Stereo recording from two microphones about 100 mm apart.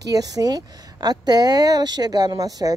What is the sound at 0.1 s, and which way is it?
Speech, 40° right (ahead or behind).